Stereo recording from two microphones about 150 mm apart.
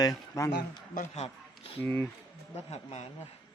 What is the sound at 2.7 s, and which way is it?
Speech, 45° left (ahead or behind).